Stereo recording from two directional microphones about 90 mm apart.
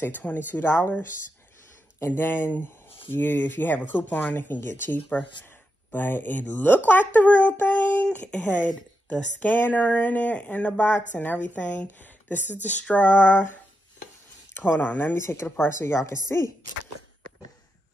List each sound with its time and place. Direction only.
0.0 s speech: 20° left (ahead or behind)
15.1 s speech: 30° left (ahead or behind)